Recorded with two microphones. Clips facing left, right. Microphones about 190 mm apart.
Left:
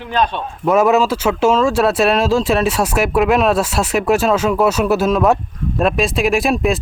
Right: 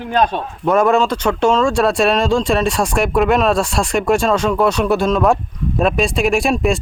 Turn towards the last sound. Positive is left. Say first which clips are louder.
# even
turn(degrees=0)  # may be behind; listen again after turning